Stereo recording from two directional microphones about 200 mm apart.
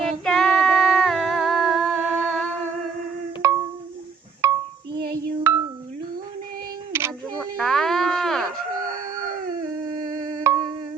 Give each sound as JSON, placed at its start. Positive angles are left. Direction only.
{"t": 0.1, "sound": "female singing", "side_deg": 0}
{"t": 3.4, "sound": "a sound", "side_deg": -15}
{"t": 5.1, "sound": "music", "side_deg": -15}
{"t": 6.9, "sound": "a sound", "side_deg": -15}
{"t": 7.5, "sound": "music", "side_deg": 0}
{"t": 9.9, "sound": "music", "side_deg": -15}